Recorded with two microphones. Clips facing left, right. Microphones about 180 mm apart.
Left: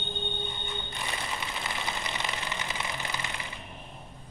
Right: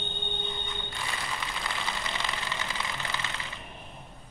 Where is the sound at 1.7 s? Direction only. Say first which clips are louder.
Even; 20° left (ahead or behind).